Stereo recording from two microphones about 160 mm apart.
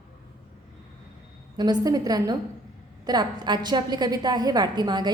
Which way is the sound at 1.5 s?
25° right (ahead or behind).